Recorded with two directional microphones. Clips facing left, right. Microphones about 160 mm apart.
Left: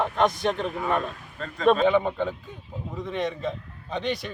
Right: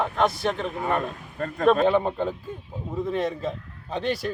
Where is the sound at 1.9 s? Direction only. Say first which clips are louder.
Even; 5° right (ahead or behind).